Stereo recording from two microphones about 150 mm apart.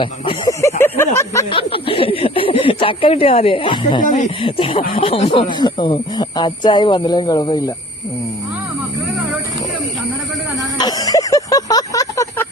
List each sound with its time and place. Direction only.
0.0 s speech: 35° left (ahead or behind)
0.6 s speech: 15° left (ahead or behind)
1.5 s speech: 35° left (ahead or behind)
4.0 s speech: 55° left (ahead or behind)
4.4 s speech: 35° left (ahead or behind)
10.8 s a sound: 25° left (ahead or behind)